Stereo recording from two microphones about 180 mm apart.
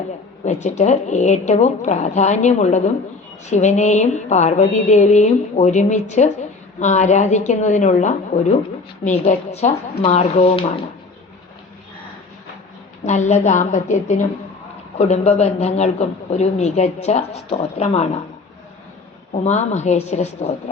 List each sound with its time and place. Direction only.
0.4 s a man's voice: 40° left (ahead or behind)
13.1 s a man's voice: 40° left (ahead or behind)
19.3 s a man's voice: 40° left (ahead or behind)